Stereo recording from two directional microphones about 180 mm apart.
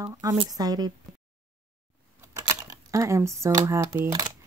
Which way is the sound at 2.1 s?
20° right (ahead or behind).